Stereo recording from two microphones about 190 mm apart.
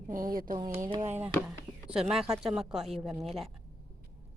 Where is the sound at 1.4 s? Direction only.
5° right (ahead or behind).